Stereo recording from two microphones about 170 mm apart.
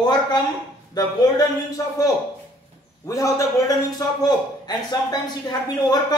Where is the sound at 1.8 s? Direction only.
20° left (ahead or behind).